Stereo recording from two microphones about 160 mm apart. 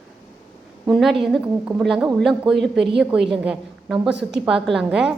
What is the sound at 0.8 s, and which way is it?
A woman's voice, centre (ahead or behind).